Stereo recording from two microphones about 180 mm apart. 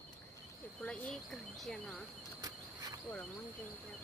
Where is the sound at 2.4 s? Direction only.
20° right (ahead or behind).